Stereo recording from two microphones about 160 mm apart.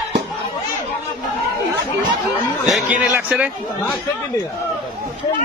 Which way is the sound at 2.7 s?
10° right (ahead or behind).